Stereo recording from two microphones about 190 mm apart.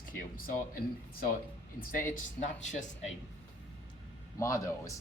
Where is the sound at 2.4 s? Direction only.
40° left (ahead or behind).